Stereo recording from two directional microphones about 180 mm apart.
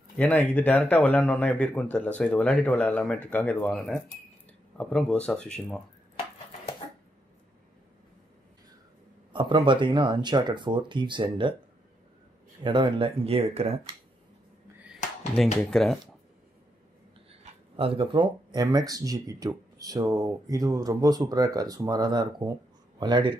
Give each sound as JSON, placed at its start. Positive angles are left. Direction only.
{"t": 0.2, "sound": "speech", "side_deg": 10}
{"t": 9.3, "sound": "speech", "side_deg": -25}
{"t": 12.6, "sound": "speech", "side_deg": -25}
{"t": 15.4, "sound": "speech", "side_deg": 0}
{"t": 17.3, "sound": "speech", "side_deg": -30}